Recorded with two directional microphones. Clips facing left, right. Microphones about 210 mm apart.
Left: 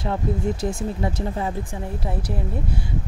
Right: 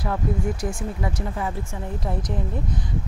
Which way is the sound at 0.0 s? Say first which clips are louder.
Left 1 dB; 25° left (ahead or behind).